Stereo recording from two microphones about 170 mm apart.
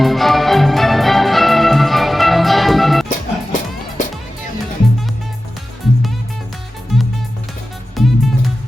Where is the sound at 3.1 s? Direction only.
50° left (ahead or behind).